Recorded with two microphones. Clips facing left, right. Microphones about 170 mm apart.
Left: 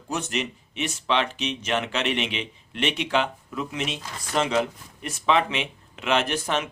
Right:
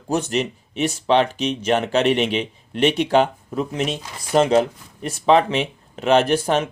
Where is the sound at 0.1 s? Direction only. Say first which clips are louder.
Right 7 dB; 35° right (ahead or behind).